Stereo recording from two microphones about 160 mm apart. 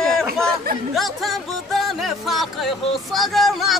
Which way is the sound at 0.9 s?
Centre (ahead or behind).